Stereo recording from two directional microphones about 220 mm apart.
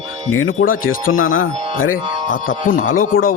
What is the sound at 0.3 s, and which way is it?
Music, 70° left (ahead or behind).